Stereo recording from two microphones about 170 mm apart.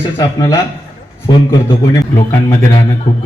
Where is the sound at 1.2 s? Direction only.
25° left (ahead or behind).